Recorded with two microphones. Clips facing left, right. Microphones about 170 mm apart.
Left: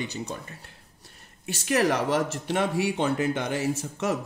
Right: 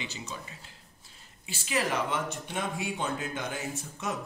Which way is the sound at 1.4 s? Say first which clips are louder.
Left 7 dB; 70° left (ahead or behind).